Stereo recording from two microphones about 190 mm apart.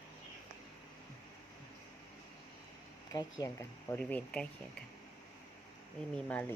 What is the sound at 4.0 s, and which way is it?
Speech, 5° left (ahead or behind).